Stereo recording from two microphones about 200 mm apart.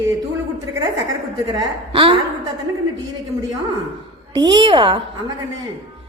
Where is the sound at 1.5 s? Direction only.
25° right (ahead or behind).